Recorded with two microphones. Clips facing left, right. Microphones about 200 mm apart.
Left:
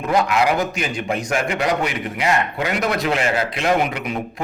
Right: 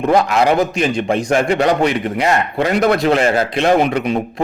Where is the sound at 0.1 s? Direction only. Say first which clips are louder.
Right 4 dB; 35° right (ahead or behind).